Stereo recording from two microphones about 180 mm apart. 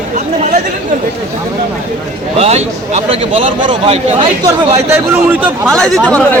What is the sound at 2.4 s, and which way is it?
Speech, 35° right (ahead or behind).